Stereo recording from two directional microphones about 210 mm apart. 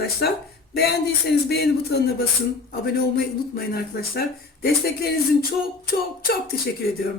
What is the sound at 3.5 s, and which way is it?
Speech, 45° left (ahead or behind).